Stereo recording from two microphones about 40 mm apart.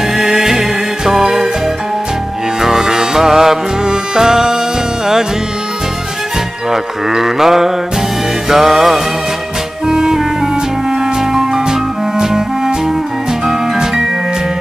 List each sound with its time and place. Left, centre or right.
0.0 s music: centre
2.6 s music: centre
6.7 s mantra: centre
9.8 s music: centre